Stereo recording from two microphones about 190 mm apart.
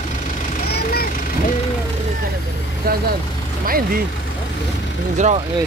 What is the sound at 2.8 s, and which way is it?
Speech, 50° right (ahead or behind).